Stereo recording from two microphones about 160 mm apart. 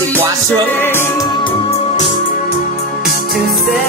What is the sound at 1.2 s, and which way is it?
Music, 25° left (ahead or behind).